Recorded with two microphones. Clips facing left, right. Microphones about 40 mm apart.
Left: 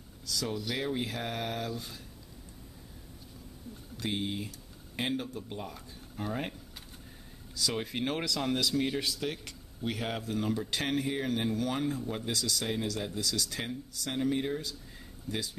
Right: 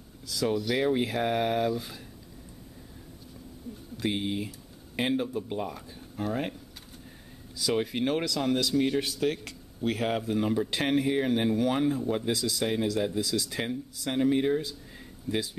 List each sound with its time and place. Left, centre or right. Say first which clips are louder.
0.3 s speech: right 7 dB; centre
0.6 s a man's voice: right 7 dB; centre
0.8 s speech: right 8 dB; centre
4.0 s a sound: right 4 dB; centre
5.1 s speech: right 7 dB; right
6.1 s a man's voice: right 4 dB; centre
7.5 s a man's voice: right 5 dB; centre
9.2 s speech: right 7 dB; centre